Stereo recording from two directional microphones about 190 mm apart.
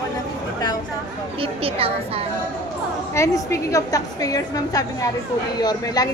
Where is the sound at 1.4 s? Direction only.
30° right (ahead or behind).